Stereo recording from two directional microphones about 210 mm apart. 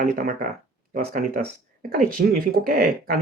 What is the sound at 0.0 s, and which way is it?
Speech, 40° right (ahead or behind).